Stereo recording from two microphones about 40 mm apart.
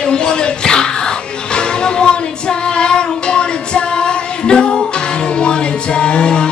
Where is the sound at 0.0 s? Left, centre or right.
Left.